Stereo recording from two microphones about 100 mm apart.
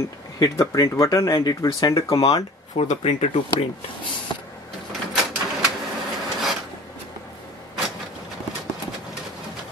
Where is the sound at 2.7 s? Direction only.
90° left.